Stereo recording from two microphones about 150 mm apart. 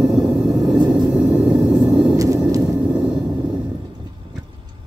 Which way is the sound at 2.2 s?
25° right (ahead or behind).